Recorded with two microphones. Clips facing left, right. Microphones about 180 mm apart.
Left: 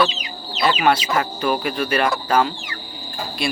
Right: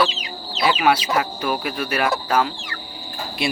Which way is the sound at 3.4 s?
20° right (ahead or behind).